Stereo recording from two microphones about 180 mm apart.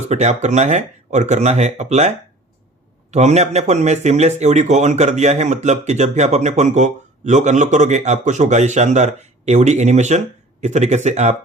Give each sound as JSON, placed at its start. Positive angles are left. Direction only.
{"t": 0.1, "sound": "a man's voice", "side_deg": -40}